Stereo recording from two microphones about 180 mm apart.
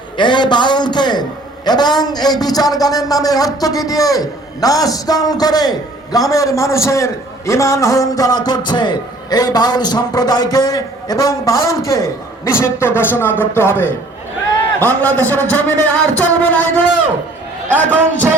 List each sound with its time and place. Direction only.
0.2 s a man's voice: 25° left (ahead or behind); by 16.8 s 10° left (ahead or behind)